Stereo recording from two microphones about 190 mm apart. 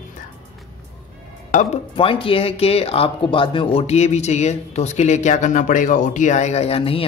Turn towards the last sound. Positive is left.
turn(degrees=30)  # may be behind; listen again after turning